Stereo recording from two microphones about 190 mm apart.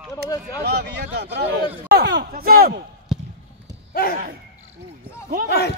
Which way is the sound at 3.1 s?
Centre (ahead or behind).